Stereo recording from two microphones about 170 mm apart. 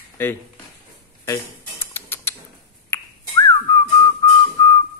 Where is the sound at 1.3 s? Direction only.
15° left (ahead or behind).